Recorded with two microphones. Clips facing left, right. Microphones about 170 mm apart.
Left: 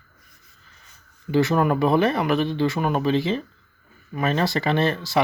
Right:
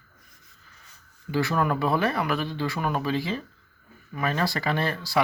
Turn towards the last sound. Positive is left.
turn(degrees=25)  # may be behind; listen again after turning